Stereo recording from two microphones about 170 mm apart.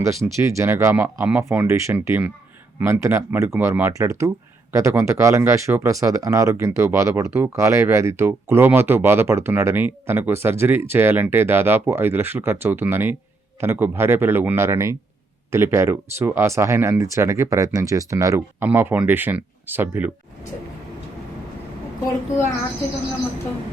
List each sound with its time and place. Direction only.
0.3 s speech: 15° right (ahead or behind)